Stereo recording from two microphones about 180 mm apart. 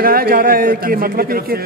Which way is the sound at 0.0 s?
55° right (ahead or behind).